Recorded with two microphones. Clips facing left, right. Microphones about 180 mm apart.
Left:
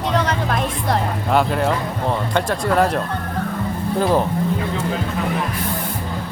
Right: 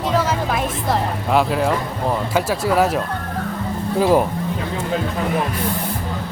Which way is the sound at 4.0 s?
10° right (ahead or behind).